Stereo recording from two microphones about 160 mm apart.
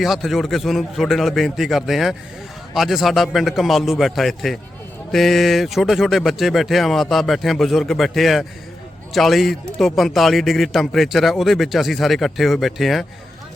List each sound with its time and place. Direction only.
0.0 s speech: centre (ahead or behind)